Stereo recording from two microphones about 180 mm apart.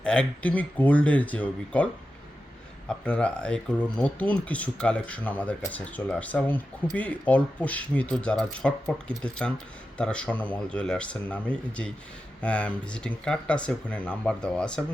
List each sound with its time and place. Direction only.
0.0 s speech: 5° left (ahead or behind)